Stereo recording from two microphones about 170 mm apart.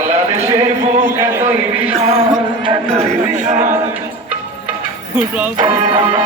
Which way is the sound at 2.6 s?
30° right (ahead or behind).